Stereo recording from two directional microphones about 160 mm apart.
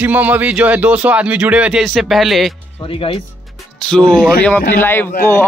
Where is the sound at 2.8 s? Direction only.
35° left (ahead or behind).